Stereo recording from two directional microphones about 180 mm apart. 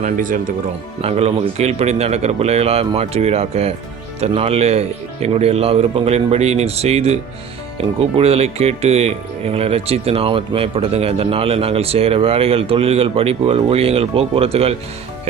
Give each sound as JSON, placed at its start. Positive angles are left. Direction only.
{"t": 0.0, "sound": "speech", "side_deg": -45}
{"t": 1.0, "sound": "speech", "side_deg": -35}